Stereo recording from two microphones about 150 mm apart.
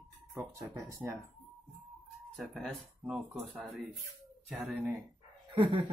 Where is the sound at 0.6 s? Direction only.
20° right (ahead or behind).